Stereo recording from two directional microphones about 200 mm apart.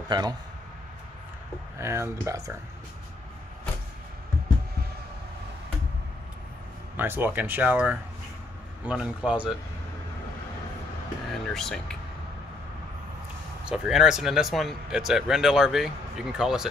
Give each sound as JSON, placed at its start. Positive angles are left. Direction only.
{"t": 0.1, "sound": "a man's voice", "side_deg": -20}
{"t": 1.8, "sound": "speech", "side_deg": -15}
{"t": 7.0, "sound": "speech", "side_deg": -10}
{"t": 11.5, "sound": "speech", "side_deg": 0}
{"t": 13.7, "sound": "speech", "side_deg": 0}